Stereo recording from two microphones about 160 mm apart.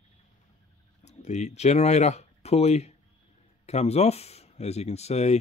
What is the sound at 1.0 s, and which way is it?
Speech, 45° left (ahead or behind).